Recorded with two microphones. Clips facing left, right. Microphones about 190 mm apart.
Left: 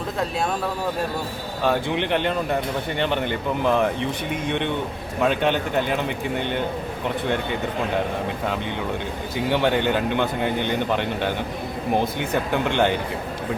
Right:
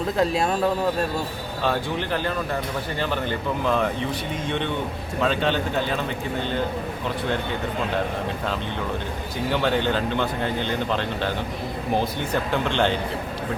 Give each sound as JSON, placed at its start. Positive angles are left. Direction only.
{"t": 1.6, "sound": "speech", "side_deg": 15}
{"t": 5.2, "sound": "speech", "side_deg": 15}
{"t": 9.5, "sound": "speech", "side_deg": 15}
{"t": 12.6, "sound": "speech", "side_deg": 15}